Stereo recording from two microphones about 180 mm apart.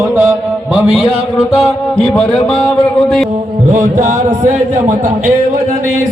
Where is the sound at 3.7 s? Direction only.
40° right (ahead or behind).